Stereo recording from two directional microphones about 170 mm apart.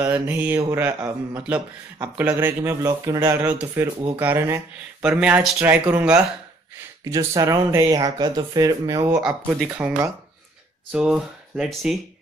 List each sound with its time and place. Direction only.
0.0 s speech: 10° right (ahead or behind)
9.2 s speech: 10° right (ahead or behind)